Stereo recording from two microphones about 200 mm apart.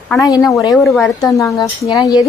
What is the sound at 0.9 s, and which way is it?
A woman's voice, 15° left (ahead or behind).